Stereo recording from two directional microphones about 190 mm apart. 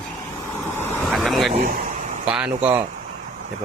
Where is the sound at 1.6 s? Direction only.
45° right (ahead or behind).